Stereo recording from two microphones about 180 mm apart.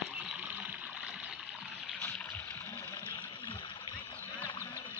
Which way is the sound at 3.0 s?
25° left (ahead or behind).